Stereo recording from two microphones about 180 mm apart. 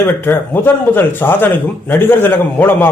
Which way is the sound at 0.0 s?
10° left (ahead or behind).